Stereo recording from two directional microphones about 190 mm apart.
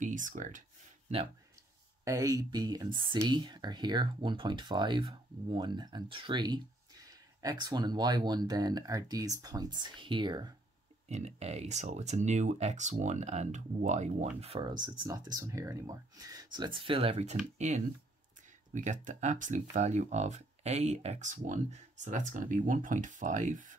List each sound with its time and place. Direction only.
0.0 s speech: 45° right (ahead or behind)
2.0 s speech: 15° right (ahead or behind)
11.1 s speech: 35° right (ahead or behind)